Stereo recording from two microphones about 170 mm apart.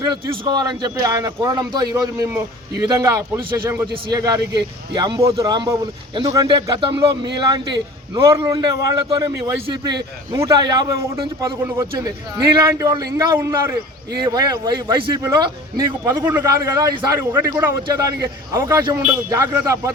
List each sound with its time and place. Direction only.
0.0 s a man's voice: 25° right (ahead or behind)
16.2 s a man's voice: 15° right (ahead or behind)